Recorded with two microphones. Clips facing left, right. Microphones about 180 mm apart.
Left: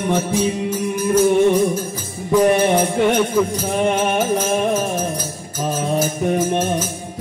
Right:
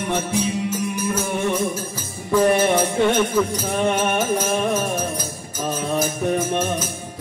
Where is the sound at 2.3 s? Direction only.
15° left (ahead or behind).